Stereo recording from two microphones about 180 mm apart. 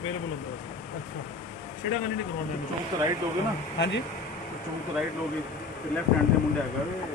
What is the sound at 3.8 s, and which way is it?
Speech, 75° left (ahead or behind).